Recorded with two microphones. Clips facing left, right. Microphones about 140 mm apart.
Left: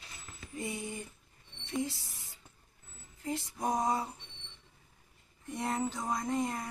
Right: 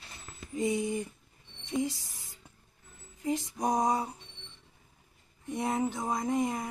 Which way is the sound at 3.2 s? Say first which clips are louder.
Right 4 dB; 15° right (ahead or behind).